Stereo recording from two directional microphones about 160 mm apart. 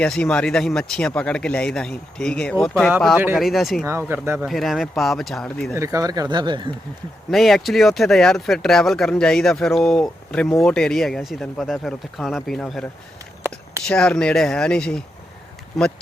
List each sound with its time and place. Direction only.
0.0 s speech: 5° left (ahead or behind)
3.8 s speech: 15° right (ahead or behind)
4.4 s speech: centre (ahead or behind)
5.7 s speech: 20° right (ahead or behind)
7.3 s speech: centre (ahead or behind)
13.8 s speech: 5° left (ahead or behind)